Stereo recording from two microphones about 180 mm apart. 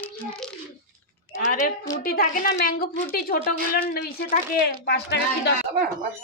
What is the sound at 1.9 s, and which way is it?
A woman's voice, 55° left (ahead or behind).